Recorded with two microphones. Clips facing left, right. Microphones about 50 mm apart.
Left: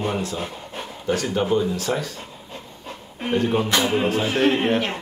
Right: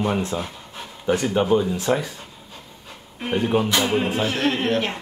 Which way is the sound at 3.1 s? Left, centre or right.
Centre.